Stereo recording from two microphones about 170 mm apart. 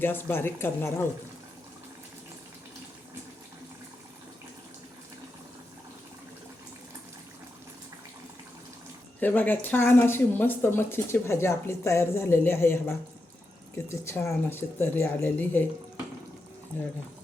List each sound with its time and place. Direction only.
0.0 s speech: 10° left (ahead or behind)
9.2 s speech: 10° left (ahead or behind)